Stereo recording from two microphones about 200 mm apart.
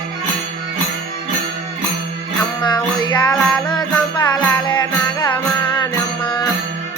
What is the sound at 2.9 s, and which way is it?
Music, 20° left (ahead or behind).